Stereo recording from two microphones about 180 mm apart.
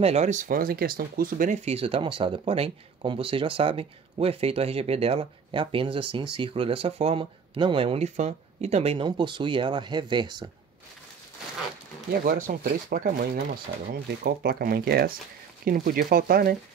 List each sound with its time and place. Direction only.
0.0 s speech: 40° right (ahead or behind)
12.1 s speech: 55° right (ahead or behind)